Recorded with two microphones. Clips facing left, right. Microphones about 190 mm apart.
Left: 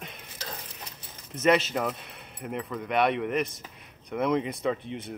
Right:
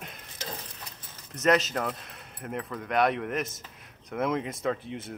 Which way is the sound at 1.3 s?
Centre (ahead or behind).